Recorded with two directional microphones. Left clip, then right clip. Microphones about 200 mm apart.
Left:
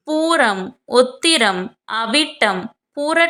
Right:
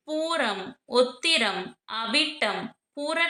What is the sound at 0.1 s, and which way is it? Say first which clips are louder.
A woman's voice: left 11 dB; 40° left (ahead or behind).